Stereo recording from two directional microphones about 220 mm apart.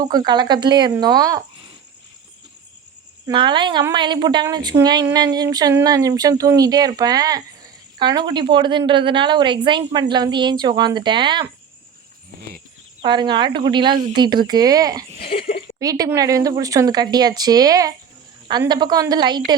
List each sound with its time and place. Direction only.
0.0 s speech: 20° right (ahead or behind)
3.2 s speech: 20° right (ahead or behind)
13.0 s speech: 20° right (ahead or behind)
15.2 s speech: 45° left (ahead or behind)
15.8 s speech: 15° right (ahead or behind)